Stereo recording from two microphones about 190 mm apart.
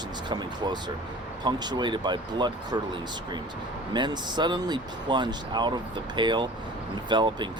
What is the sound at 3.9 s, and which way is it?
Speech, 25° right (ahead or behind).